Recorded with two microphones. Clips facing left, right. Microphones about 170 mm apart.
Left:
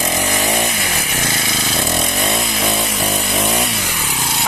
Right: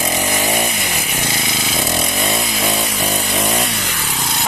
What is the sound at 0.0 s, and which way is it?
Chainsaw, 10° right (ahead or behind).